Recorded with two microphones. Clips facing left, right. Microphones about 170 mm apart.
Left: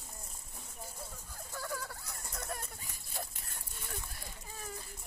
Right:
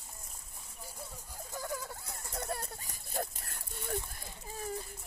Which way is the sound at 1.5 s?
15° right (ahead or behind).